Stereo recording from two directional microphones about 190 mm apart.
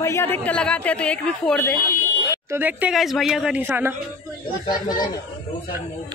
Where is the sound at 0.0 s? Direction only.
15° left (ahead or behind).